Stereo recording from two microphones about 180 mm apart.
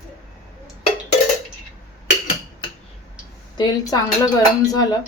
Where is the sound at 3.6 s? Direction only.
20° left (ahead or behind).